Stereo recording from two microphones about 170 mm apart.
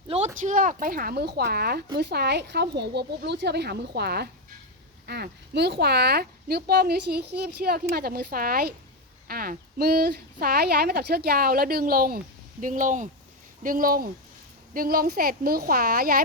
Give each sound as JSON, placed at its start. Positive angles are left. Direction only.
{"t": 0.1, "sound": "a sound", "side_deg": -35}
{"t": 0.4, "sound": "speech", "side_deg": -50}
{"t": 2.0, "sound": "a woman's voice", "side_deg": -80}